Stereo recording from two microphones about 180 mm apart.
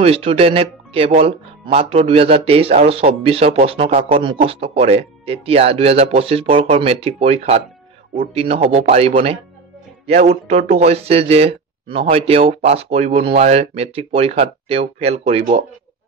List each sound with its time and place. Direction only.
0.0 s speech: 30° right (ahead or behind)